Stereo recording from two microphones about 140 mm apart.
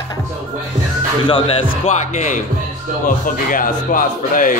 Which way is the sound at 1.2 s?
35° left (ahead or behind).